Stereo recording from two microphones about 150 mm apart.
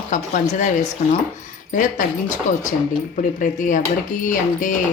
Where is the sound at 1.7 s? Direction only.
60° left (ahead or behind).